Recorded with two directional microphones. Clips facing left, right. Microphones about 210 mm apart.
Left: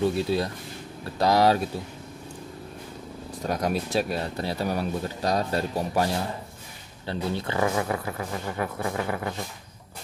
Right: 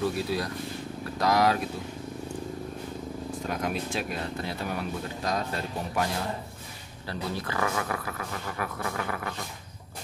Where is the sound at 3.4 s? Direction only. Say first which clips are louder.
Left 5 dB; 40° left (ahead or behind).